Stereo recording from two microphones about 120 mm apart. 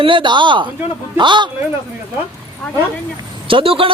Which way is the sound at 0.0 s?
45° right (ahead or behind).